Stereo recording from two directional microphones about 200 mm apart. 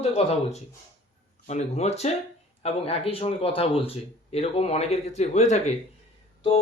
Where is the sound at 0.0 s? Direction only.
30° left (ahead or behind).